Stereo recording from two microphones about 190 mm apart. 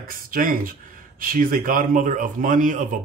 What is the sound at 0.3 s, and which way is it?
Speech, 45° right (ahead or behind).